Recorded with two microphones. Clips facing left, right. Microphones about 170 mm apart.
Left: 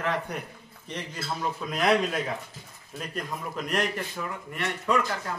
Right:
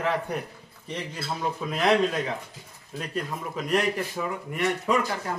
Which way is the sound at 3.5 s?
Centre (ahead or behind).